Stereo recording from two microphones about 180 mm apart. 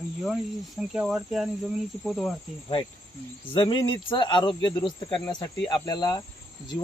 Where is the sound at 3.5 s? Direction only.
30° left (ahead or behind).